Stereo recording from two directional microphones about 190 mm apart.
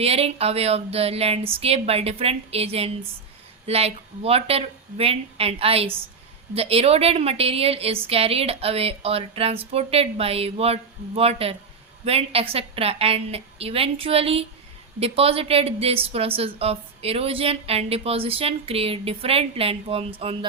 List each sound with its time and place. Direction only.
0.0 s a woman's voice: 30° right (ahead or behind)